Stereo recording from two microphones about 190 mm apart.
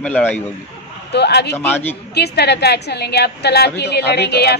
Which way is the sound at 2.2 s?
60° left (ahead or behind).